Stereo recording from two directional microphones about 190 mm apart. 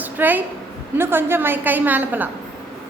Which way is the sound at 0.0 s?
10° right (ahead or behind).